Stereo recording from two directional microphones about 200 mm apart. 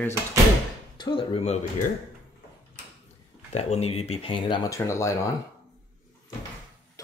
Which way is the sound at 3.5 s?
30° left (ahead or behind).